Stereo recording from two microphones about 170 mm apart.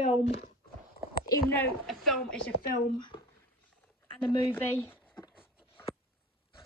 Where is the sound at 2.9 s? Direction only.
25° left (ahead or behind).